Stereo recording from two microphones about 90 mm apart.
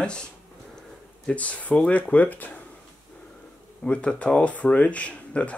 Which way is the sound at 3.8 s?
15° left (ahead or behind).